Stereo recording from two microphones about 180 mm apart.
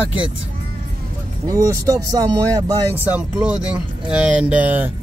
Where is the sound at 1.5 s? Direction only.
20° right (ahead or behind).